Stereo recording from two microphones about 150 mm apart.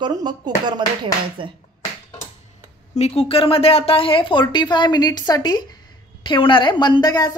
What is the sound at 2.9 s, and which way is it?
A woman's voice, 45° left (ahead or behind).